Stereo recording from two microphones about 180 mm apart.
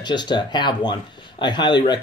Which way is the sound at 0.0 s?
25° left (ahead or behind).